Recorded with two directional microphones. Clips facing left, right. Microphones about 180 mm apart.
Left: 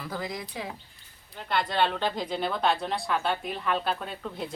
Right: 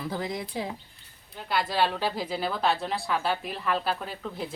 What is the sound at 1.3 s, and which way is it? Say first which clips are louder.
Speech: even; 5° right (ahead or behind).